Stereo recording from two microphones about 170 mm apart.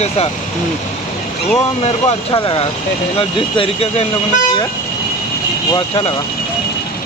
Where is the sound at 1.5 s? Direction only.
35° left (ahead or behind).